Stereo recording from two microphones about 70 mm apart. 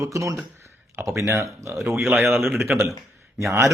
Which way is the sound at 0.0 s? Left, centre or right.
Right.